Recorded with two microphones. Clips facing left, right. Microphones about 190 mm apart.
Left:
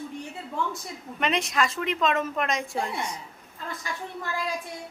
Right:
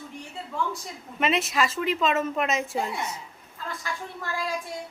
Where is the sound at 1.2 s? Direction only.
5° right (ahead or behind).